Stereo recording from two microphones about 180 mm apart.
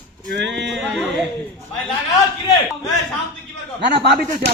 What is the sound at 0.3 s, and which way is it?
Speech, 75° right (ahead or behind).